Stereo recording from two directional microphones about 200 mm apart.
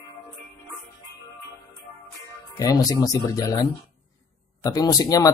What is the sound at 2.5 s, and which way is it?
Speech, 15° left (ahead or behind).